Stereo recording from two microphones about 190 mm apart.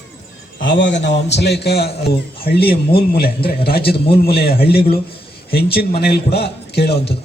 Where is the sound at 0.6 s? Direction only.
70° left (ahead or behind).